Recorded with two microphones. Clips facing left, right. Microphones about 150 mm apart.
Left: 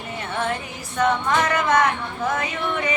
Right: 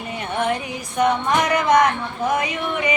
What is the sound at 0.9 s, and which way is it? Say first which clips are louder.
Speech: right 2 dB; 15° right (ahead or behind).